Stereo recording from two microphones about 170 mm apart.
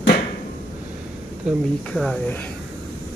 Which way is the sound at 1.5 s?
5° right (ahead or behind).